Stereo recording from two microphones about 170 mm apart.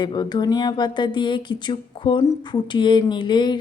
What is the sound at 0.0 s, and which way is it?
A woman's voice, 25° left (ahead or behind).